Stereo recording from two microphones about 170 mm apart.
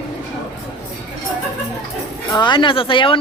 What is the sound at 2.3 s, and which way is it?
Speech, 25° left (ahead or behind).